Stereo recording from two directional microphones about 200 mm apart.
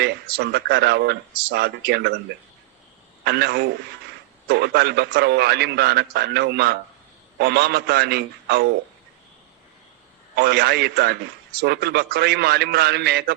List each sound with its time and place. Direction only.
0.0 s a man's voice: 55° right (ahead or behind)
3.2 s a man's voice: 55° right (ahead or behind)
10.3 s a man's voice: 55° right (ahead or behind)